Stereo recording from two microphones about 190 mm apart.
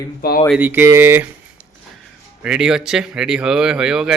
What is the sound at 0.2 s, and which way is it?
Speech, 50° left (ahead or behind).